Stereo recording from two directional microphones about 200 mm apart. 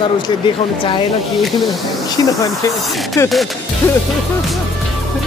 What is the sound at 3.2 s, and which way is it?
Speech, 10° left (ahead or behind).